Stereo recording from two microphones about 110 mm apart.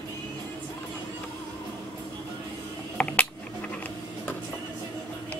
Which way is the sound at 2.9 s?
10° left (ahead or behind).